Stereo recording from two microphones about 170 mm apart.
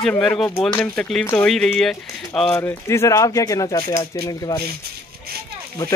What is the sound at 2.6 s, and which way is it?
Speech, 15° left (ahead or behind).